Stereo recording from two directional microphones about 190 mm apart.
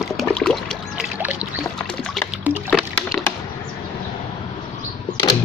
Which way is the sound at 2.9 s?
5° left (ahead or behind).